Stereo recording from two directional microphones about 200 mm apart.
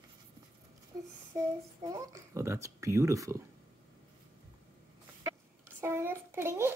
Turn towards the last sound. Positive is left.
turn(degrees=-10)  # may be behind; listen again after turning